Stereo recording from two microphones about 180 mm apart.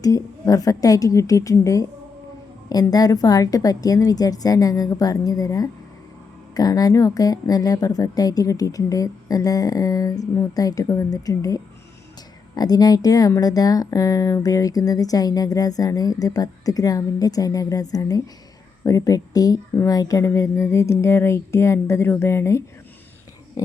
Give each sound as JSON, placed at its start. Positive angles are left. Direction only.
{"t": 0.0, "sound": "speech", "side_deg": 20}
{"t": 23.6, "sound": "pig", "side_deg": 20}